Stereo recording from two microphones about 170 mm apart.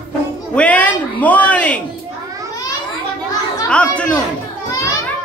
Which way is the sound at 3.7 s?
5° left (ahead or behind).